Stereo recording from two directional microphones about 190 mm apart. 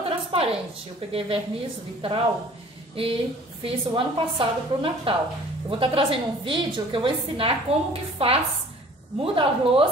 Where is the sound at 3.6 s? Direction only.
25° right (ahead or behind).